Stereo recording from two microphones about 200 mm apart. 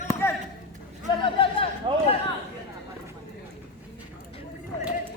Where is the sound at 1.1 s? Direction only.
25° left (ahead or behind).